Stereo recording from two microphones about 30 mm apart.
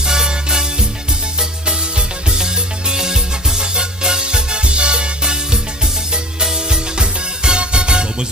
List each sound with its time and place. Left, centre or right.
0.0 s music: right